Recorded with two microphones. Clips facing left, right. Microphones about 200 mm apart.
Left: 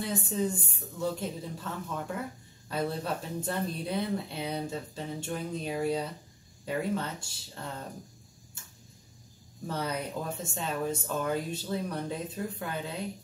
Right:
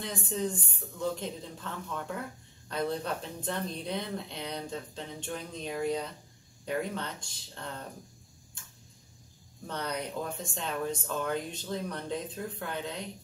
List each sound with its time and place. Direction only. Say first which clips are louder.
0.0 s speech: left 3 dB; 5° left (ahead or behind)
9.7 s speech: left 2 dB; 5° left (ahead or behind)